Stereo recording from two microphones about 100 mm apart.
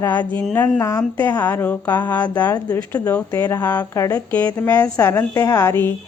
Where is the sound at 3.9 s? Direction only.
35° left (ahead or behind).